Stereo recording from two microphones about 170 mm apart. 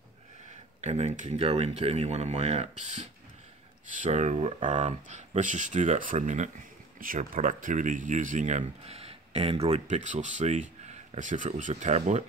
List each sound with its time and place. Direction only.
0.7 s speech: 40° right (ahead or behind)